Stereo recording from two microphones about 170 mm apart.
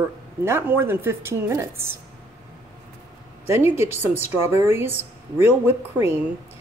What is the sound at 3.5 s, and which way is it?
A woman's voice, 15° right (ahead or behind).